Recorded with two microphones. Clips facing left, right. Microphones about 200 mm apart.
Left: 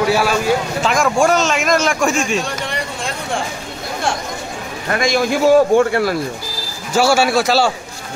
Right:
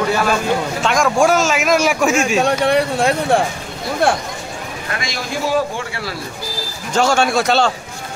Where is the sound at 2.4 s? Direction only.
60° right (ahead or behind).